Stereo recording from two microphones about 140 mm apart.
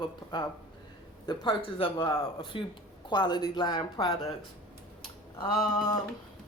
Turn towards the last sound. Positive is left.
turn(degrees=35)  # may be behind; listen again after turning